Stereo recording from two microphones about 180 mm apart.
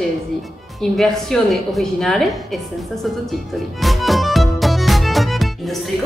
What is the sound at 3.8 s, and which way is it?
Music, centre (ahead or behind).